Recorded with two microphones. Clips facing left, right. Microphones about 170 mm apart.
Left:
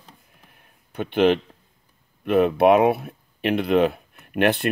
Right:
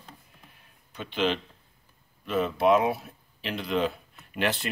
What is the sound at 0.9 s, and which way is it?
Speech, 55° left (ahead or behind).